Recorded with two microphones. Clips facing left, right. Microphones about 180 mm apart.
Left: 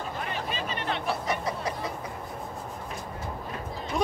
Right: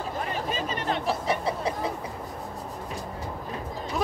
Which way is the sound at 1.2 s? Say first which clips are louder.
Right 3 dB; 30° right (ahead or behind).